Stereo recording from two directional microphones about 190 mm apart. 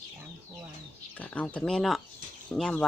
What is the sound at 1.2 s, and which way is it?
A woman's voice, 5° left (ahead or behind).